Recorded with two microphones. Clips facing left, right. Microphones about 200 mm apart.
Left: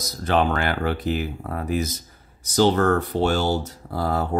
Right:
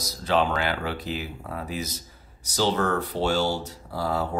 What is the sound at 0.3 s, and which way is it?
Speech, 55° left (ahead or behind).